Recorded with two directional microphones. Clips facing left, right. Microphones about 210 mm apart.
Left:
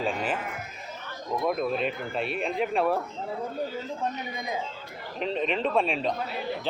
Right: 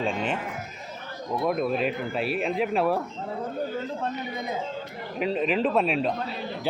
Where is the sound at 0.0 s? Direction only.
5° left (ahead or behind).